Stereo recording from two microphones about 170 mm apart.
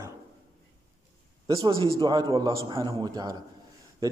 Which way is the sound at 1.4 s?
25° right (ahead or behind).